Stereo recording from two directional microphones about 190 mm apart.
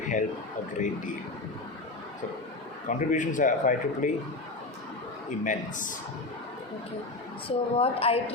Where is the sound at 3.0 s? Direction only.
40° left (ahead or behind).